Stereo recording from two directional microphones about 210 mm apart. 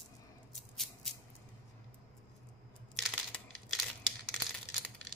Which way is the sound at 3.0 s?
5° left (ahead or behind).